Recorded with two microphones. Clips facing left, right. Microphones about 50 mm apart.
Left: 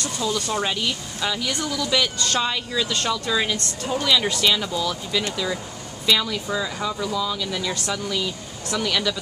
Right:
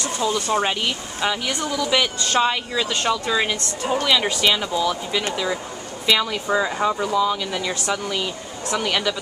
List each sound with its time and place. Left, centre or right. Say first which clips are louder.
0.0 s speech: right 3 dB; right